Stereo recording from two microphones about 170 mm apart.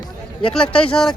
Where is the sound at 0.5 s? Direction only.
5° left (ahead or behind).